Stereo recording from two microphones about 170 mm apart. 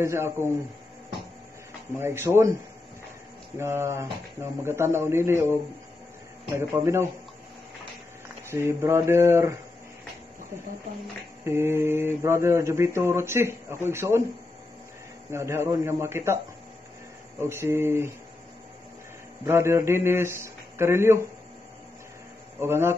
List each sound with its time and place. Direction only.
0.0 s mantra: 15° right (ahead or behind)
2.0 s mantra: 15° right (ahead or behind)
3.5 s mantra: 15° right (ahead or behind)
8.5 s mantra: 15° right (ahead or behind)
11.4 s mantra: 15° right (ahead or behind)
15.3 s mantra: 15° right (ahead or behind)
17.4 s mantra: 15° right (ahead or behind)
19.4 s mantra: 15° right (ahead or behind)
22.6 s mantra: 15° right (ahead or behind)